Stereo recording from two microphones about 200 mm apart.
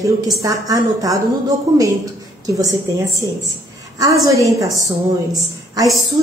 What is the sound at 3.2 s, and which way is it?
A woman's voice, 15° right (ahead or behind).